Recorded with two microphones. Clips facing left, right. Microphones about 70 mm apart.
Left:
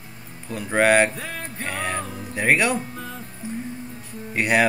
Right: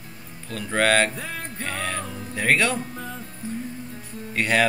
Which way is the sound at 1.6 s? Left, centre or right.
Centre.